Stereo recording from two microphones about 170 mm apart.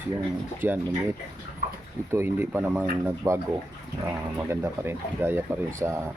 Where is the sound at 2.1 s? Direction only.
15° right (ahead or behind).